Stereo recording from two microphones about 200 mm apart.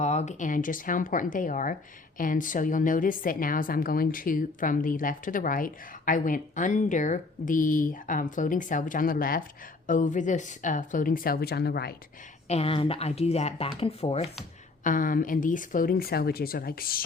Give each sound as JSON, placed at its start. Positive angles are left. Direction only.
{"t": 0.0, "sound": "a woman's voice", "side_deg": 35}
{"t": 12.5, "sound": "speech", "side_deg": 30}
{"t": 14.8, "sound": "a woman's voice", "side_deg": 40}